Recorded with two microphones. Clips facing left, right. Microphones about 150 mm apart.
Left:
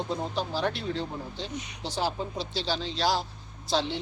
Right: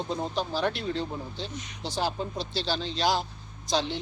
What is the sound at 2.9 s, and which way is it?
Speech, 20° right (ahead or behind).